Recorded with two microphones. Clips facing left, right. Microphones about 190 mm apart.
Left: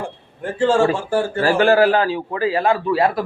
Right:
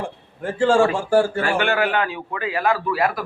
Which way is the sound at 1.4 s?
35° left (ahead or behind).